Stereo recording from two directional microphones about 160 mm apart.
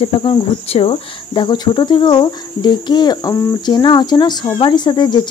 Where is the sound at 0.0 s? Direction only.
30° left (ahead or behind).